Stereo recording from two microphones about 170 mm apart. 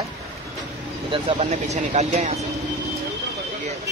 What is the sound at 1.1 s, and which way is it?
Speech, 35° right (ahead or behind).